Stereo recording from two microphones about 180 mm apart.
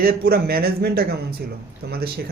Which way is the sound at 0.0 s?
55° right (ahead or behind).